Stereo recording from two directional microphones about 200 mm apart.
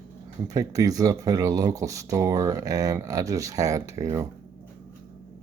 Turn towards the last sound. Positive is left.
turn(degrees=-15)  # may be behind; listen again after turning